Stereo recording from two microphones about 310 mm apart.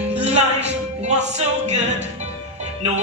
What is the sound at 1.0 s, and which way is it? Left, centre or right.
A capella, right.